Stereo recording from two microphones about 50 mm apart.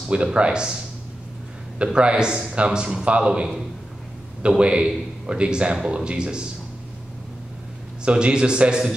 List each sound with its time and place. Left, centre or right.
0.1 s speech: right
2.0 s a man's voice: centre
8.0 s speech: centre